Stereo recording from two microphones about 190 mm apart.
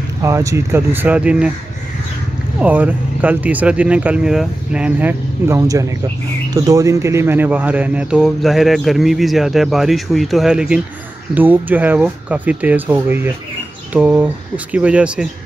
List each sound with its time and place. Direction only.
0.2 s speech: 15° right (ahead or behind)
2.6 s speech: 10° right (ahead or behind)